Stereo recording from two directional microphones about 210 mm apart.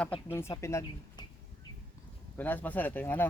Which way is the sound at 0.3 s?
15° left (ahead or behind).